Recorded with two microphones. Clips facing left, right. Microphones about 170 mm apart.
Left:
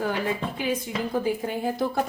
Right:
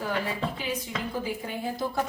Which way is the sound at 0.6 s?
50° left (ahead or behind).